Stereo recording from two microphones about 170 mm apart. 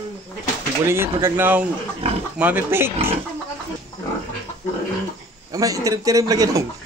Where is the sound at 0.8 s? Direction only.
15° right (ahead or behind).